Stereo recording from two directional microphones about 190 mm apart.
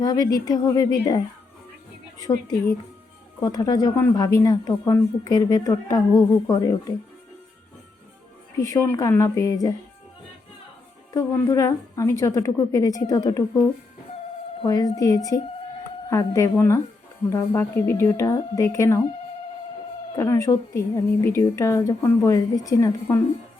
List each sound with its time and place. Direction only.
0.0 s speech: 20° left (ahead or behind)
2.2 s speech: 20° left (ahead or behind)
8.5 s a woman's voice: 15° left (ahead or behind)
11.1 s a woman's voice: 15° left (ahead or behind)
20.1 s a woman's voice: 15° left (ahead or behind)